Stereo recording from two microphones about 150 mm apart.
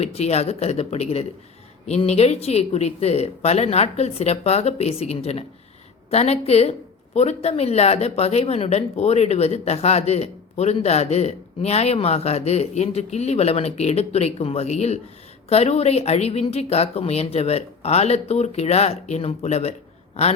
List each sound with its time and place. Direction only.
0.0 s a woman's voice: 45° left (ahead or behind)